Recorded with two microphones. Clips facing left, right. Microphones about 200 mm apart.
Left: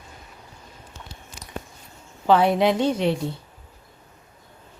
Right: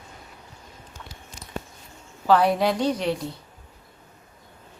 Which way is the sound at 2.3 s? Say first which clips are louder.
Left 1 dB; 25° left (ahead or behind).